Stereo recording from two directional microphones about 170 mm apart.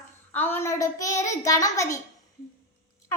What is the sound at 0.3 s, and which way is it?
A child's voice, 10° left (ahead or behind).